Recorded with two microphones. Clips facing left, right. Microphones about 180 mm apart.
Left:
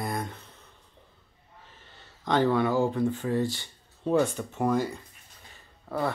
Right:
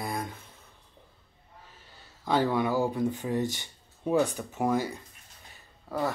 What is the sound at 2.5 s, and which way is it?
Speech, 10° right (ahead or behind).